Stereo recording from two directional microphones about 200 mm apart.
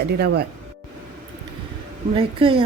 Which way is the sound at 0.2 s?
55° right (ahead or behind).